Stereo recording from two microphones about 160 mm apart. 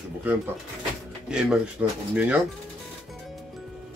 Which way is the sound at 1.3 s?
5° right (ahead or behind).